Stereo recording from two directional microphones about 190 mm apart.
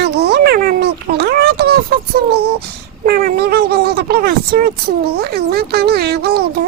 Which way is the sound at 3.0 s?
55° right (ahead or behind).